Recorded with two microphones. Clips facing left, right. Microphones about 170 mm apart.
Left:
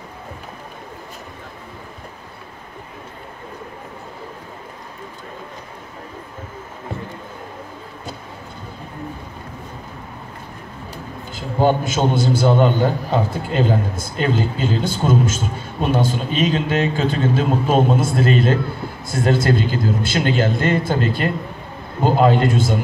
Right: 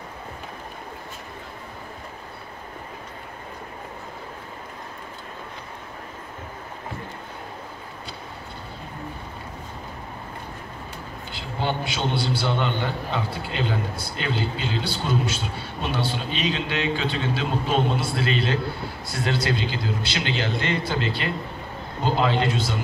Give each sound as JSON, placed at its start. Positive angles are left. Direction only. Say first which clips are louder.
{"t": 11.3, "sound": "a man's voice", "louder": "left 10 dB", "side_deg": 45}